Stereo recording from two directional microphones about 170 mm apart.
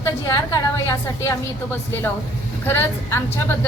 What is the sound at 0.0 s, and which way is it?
A woman's voice, 20° left (ahead or behind).